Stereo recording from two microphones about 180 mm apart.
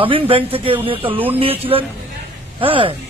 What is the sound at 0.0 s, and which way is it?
A man's voice, 30° right (ahead or behind).